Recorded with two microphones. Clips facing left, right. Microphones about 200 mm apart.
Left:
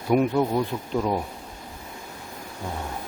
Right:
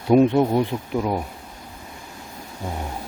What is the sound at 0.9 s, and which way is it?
Speech, 5° right (ahead or behind).